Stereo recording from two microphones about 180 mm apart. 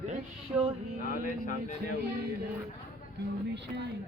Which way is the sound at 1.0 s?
50° left (ahead or behind).